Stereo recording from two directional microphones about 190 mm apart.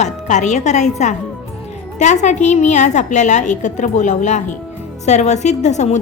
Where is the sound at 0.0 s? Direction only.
40° left (ahead or behind).